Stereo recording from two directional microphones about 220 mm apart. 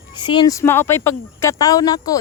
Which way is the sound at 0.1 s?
20° left (ahead or behind).